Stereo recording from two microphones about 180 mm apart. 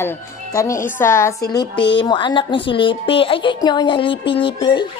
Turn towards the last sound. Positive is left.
turn(degrees=25)  # may be behind; listen again after turning